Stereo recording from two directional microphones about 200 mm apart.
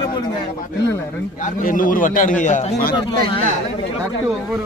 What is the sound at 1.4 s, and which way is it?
A man's voice, 45° left (ahead or behind).